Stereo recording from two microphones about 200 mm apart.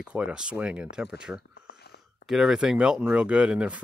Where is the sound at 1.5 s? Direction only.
55° left (ahead or behind).